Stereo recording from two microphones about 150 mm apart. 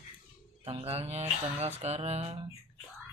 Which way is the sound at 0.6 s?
40° right (ahead or behind).